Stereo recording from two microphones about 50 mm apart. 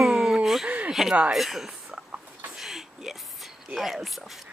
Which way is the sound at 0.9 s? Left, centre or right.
Centre.